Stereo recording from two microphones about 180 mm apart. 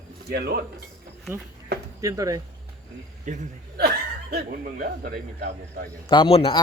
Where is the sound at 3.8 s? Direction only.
65° right (ahead or behind).